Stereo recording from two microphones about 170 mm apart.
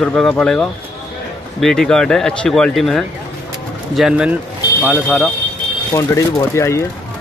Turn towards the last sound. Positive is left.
turn(degrees=15)  # may be behind; listen again after turning